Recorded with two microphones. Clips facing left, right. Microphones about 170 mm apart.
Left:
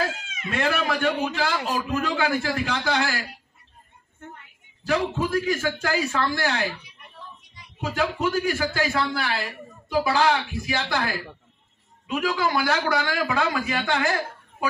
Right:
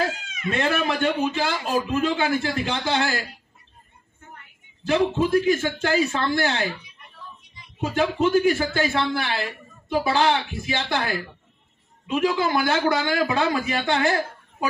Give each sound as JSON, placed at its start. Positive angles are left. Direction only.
{"t": 0.5, "sound": "speech", "side_deg": -25}
{"t": 4.8, "sound": "speech", "side_deg": -25}
{"t": 7.8, "sound": "speech", "side_deg": -25}
{"t": 12.1, "sound": "speech", "side_deg": -25}